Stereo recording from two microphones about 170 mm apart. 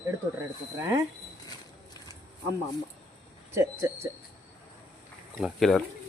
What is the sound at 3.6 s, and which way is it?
Speech, 15° right (ahead or behind).